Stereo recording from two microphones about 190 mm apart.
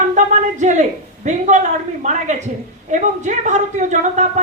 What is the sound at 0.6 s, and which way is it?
A woman's voice, 40° right (ahead or behind).